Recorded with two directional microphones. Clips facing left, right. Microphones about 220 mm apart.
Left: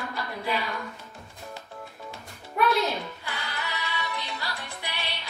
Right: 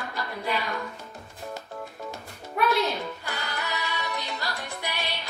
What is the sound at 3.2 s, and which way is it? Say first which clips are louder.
Music: right 2 dB; 45° right (ahead or behind).